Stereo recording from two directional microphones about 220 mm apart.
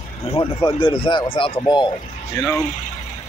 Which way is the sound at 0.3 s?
20° left (ahead or behind).